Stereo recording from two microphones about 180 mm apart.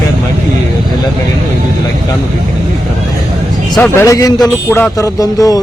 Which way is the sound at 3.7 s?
10° left (ahead or behind).